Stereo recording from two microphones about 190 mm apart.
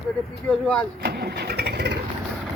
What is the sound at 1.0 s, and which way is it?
Vehicle, 60° right (ahead or behind).